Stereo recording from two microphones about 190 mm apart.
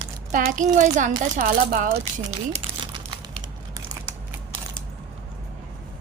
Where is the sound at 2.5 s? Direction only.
25° right (ahead or behind).